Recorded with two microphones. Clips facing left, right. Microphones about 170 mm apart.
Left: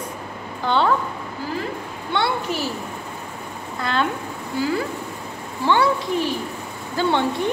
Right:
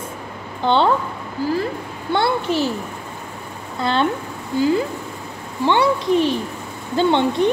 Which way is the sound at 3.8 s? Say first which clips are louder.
Right 4 dB; 25° right (ahead or behind).